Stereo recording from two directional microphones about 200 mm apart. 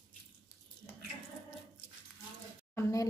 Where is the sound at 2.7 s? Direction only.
15° left (ahead or behind).